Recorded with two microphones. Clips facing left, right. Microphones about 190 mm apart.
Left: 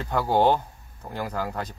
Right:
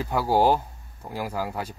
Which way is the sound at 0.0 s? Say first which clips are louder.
Even; 10° right (ahead or behind).